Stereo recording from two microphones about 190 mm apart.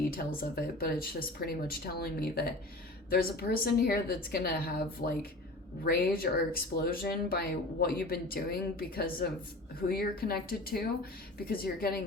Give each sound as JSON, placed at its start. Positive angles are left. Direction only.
{"t": 0.1, "sound": "speech", "side_deg": 50}